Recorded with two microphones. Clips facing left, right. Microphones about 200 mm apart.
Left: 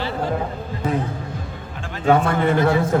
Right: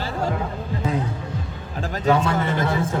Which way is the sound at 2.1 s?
50° left (ahead or behind).